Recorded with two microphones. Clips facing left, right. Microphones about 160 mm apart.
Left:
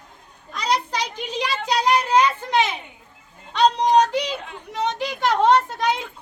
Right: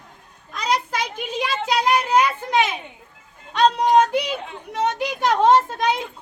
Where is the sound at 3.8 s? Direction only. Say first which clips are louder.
Right 1 dB; 10° right (ahead or behind).